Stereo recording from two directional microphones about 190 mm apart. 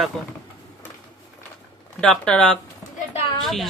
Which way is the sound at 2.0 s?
5° left (ahead or behind).